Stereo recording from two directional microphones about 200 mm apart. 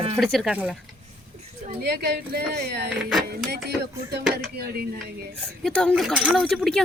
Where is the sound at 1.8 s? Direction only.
55° right (ahead or behind).